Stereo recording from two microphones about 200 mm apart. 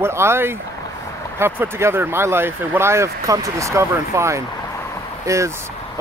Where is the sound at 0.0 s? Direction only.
10° right (ahead or behind).